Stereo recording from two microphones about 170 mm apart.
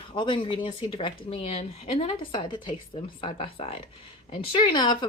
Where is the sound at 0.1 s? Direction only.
30° left (ahead or behind).